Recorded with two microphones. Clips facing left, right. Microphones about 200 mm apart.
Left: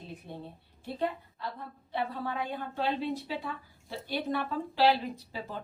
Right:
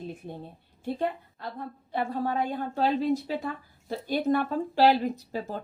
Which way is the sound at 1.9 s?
45° right (ahead or behind).